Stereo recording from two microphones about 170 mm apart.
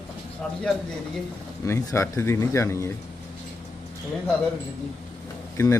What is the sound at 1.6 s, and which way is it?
Speech, 15° left (ahead or behind).